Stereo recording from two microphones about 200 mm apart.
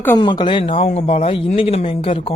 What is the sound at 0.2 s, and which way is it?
Speech, 25° left (ahead or behind).